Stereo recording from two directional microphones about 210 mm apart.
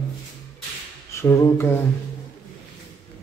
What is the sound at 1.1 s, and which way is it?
Speech, 10° left (ahead or behind).